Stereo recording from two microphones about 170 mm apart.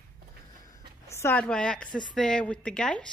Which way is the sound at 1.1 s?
15° left (ahead or behind).